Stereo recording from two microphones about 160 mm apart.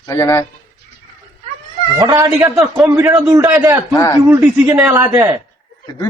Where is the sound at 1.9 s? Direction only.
20° right (ahead or behind).